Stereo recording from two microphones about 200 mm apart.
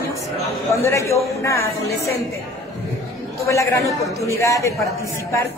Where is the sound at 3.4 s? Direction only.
15° left (ahead or behind).